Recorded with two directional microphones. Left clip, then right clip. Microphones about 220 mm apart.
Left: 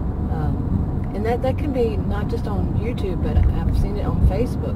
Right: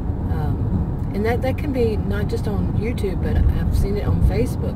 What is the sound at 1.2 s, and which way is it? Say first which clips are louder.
Speech: even; 20° right (ahead or behind).